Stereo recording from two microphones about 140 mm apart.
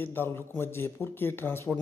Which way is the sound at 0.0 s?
15° left (ahead or behind).